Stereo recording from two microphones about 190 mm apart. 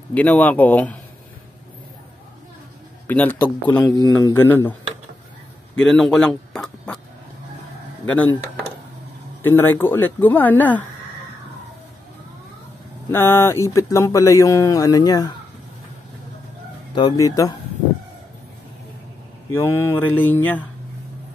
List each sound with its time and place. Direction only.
0.1 s speech: 10° left (ahead or behind)
3.1 s speech: 10° left (ahead or behind)
3.4 s speech: 20° left (ahead or behind)
4.2 s speech: 10° left (ahead or behind)
5.9 s speech: centre (ahead or behind)
8.0 s speech: 10° left (ahead or behind)
9.4 s speech: 10° left (ahead or behind)
13.1 s speech: 10° left (ahead or behind)
16.9 s speech: 20° left (ahead or behind)
19.5 s speech: 15° left (ahead or behind)